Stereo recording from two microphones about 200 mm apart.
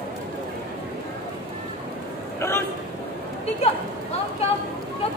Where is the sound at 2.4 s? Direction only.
15° left (ahead or behind).